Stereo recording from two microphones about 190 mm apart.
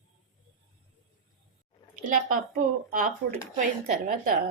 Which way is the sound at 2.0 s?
45° right (ahead or behind).